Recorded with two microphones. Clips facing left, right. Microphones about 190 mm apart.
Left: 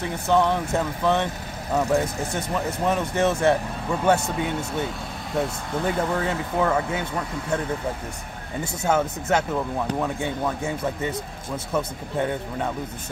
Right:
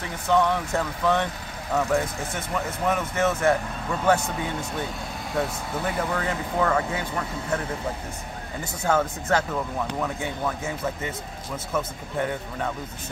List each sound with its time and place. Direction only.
0.3 s speech: 25° left (ahead or behind)
6.1 s speech: 20° left (ahead or behind)
8.8 s speech: 20° left (ahead or behind)
11.7 s speech: 15° left (ahead or behind)